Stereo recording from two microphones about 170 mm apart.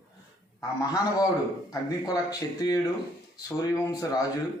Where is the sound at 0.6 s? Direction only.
20° left (ahead or behind).